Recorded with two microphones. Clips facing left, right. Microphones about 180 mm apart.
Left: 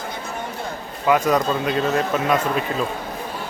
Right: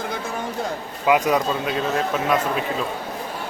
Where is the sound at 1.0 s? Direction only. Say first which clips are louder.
Left 1 dB; 10° right (ahead or behind).